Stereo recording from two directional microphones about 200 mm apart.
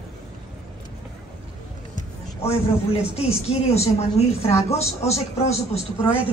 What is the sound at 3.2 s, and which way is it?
A woman's voice, 30° left (ahead or behind).